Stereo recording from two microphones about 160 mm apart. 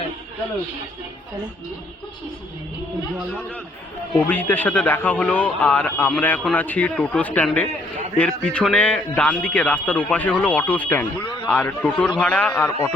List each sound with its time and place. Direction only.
4.3 s a man's voice: 10° left (ahead or behind)